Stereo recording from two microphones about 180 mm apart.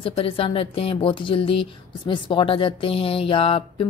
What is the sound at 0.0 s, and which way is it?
Speech, 30° left (ahead or behind).